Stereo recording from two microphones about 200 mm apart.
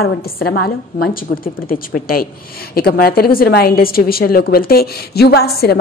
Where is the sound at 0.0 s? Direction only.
50° left (ahead or behind).